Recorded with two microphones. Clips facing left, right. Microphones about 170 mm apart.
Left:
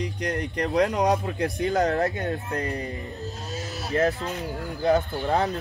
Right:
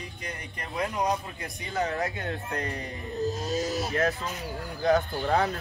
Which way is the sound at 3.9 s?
35° left (ahead or behind).